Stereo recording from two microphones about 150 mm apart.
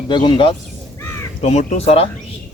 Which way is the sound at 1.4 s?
45° left (ahead or behind).